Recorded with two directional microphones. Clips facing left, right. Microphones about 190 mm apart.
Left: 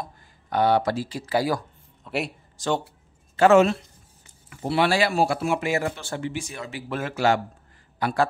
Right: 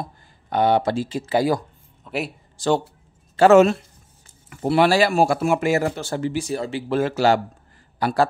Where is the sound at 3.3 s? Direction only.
40° right (ahead or behind).